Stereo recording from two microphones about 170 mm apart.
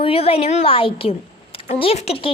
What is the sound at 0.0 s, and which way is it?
A woman's voice, 35° left (ahead or behind).